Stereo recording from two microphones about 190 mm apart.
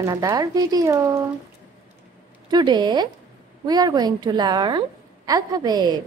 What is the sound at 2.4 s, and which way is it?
A woman's voice, 25° right (ahead or behind).